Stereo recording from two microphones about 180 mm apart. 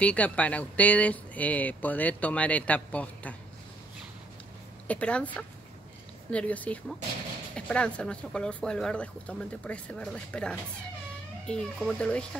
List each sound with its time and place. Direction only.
0.0 s speech: 5° left (ahead or behind)
4.8 s speech: 5° left (ahead or behind)